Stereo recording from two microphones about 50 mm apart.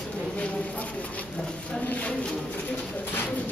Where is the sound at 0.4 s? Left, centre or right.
Left.